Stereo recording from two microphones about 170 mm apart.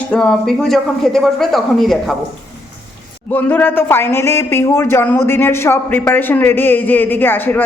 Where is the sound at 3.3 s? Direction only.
10° left (ahead or behind).